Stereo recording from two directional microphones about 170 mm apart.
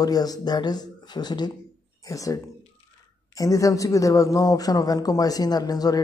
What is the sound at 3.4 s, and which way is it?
A man's voice, 20° left (ahead or behind).